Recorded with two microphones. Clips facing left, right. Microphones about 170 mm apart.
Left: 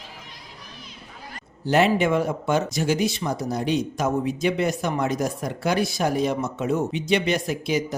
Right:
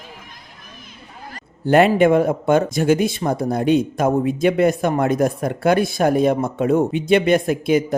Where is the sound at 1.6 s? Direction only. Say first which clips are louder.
Right 6 dB; 55° right (ahead or behind).